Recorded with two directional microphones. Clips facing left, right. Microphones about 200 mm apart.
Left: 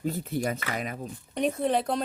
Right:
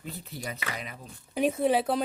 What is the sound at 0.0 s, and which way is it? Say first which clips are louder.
Speech: left 10 dB; 45° left (ahead or behind).